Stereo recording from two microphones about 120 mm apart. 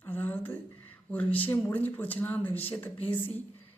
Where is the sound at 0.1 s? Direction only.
15° left (ahead or behind).